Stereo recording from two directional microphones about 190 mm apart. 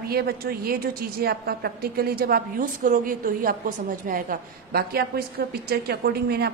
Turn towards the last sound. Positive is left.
turn(degrees=-55)  # may be behind; listen again after turning